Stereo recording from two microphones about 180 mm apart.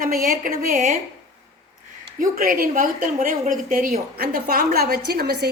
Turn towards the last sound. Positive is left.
turn(degrees=-65)  # may be behind; listen again after turning